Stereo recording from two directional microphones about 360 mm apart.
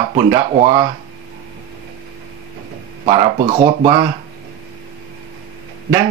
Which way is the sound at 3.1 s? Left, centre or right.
Centre.